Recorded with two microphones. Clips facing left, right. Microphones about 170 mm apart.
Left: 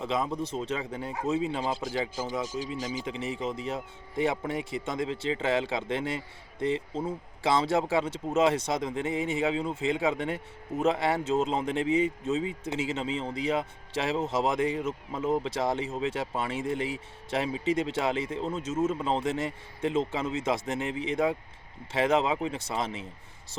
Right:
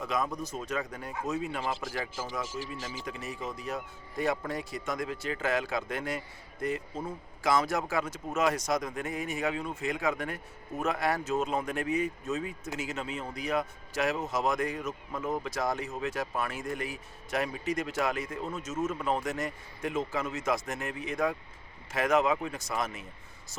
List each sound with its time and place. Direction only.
0.0 s a man's voice: 25° left (ahead or behind)